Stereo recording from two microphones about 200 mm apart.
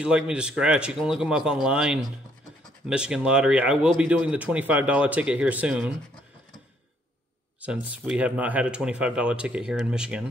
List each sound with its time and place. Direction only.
0.0 s speech: 5° right (ahead or behind)
7.6 s speech: 5° right (ahead or behind)